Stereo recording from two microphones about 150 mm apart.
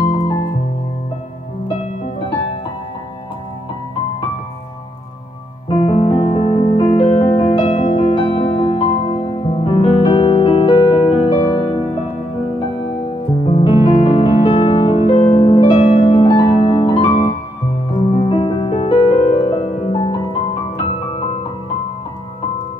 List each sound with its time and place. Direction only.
0.0 s music: 35° left (ahead or behind)
5.7 s music: 35° left (ahead or behind)
13.5 s music: 35° left (ahead or behind)
16.1 s keyboard: 35° left (ahead or behind)
18.2 s music: 35° left (ahead or behind)